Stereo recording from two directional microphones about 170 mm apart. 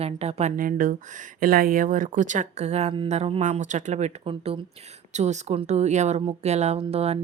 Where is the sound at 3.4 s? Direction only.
45° right (ahead or behind).